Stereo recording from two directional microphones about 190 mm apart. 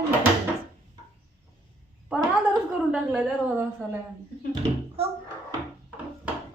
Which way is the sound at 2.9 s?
5° right (ahead or behind).